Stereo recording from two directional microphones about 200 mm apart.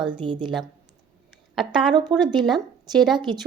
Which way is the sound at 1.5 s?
Centre (ahead or behind).